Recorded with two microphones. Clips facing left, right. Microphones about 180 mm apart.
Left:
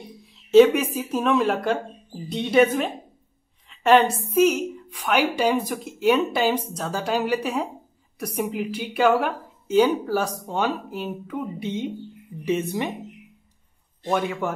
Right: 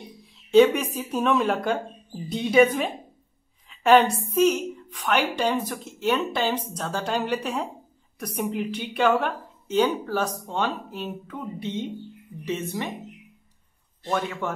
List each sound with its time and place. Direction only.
0.5 s a woman's voice: centre (ahead or behind)
14.0 s a woman's voice: 10° left (ahead or behind)